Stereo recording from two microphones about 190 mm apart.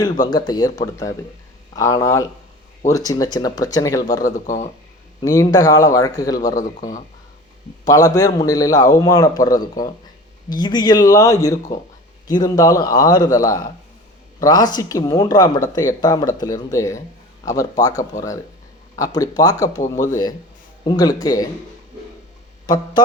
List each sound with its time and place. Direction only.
0.0 s a man's voice: 20° left (ahead or behind)
4.3 s speech: 40° left (ahead or behind)
5.2 s a man's voice: 20° left (ahead or behind)
22.6 s speech: 20° left (ahead or behind)